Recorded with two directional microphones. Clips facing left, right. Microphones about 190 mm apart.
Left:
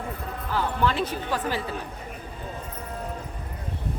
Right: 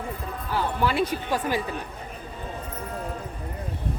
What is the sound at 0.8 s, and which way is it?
Speech, 10° right (ahead or behind).